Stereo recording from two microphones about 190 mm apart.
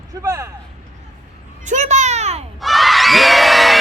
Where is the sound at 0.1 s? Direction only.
15° right (ahead or behind).